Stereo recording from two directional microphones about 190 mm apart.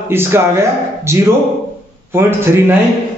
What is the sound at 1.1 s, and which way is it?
A man's voice, 15° right (ahead or behind).